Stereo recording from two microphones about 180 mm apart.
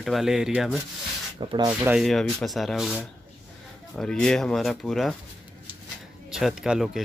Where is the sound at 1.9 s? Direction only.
Centre (ahead or behind).